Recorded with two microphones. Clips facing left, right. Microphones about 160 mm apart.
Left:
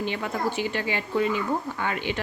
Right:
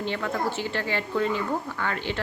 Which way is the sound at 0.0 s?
15° left (ahead or behind).